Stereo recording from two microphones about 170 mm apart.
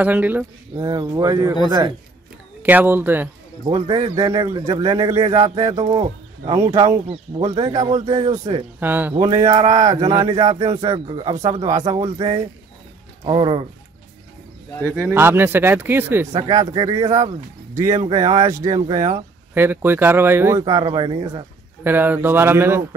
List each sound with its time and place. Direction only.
0.0 s speech: 10° right (ahead or behind)
0.7 s speech: 25° right (ahead or behind)
2.6 s speech: 10° right (ahead or behind)
3.6 s speech: 25° right (ahead or behind)
7.5 s speech: 25° right (ahead or behind)
8.7 s speech: 10° right (ahead or behind)
9.2 s speech: 20° right (ahead or behind)
15.0 s speech: 15° right (ahead or behind)
16.4 s speech: 25° right (ahead or behind)
20.6 s speech: 30° right (ahead or behind)
21.8 s speech: 10° right (ahead or behind)